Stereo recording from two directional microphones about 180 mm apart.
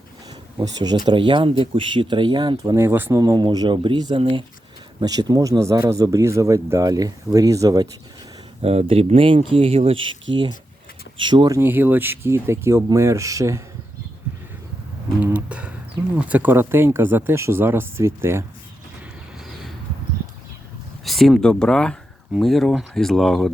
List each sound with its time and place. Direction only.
0.6 s speech: 20° right (ahead or behind)
8.6 s speech: 35° right (ahead or behind)
11.2 s speech: 25° right (ahead or behind)
15.2 s a sound: 5° right (ahead or behind)
16.1 s speech: 10° right (ahead or behind)
21.0 s speech: centre (ahead or behind)